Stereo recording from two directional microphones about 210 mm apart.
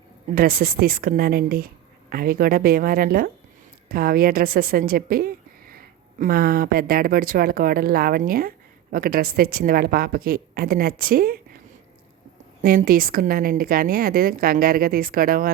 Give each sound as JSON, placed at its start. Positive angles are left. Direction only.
{"t": 0.3, "sound": "a woman's voice", "side_deg": -45}
{"t": 12.6, "sound": "a woman's voice", "side_deg": -45}